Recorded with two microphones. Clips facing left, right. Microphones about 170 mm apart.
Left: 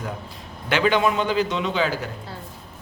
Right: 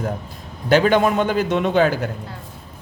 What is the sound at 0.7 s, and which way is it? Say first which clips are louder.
A man's voice: right 5 dB; 45° right (ahead or behind).